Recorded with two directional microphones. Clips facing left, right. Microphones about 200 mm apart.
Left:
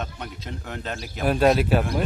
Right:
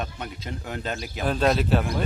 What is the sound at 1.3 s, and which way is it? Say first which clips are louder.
Speech: left 3 dB; 10° left (ahead or behind).